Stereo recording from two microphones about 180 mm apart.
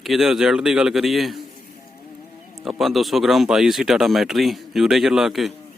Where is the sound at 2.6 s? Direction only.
Centre (ahead or behind).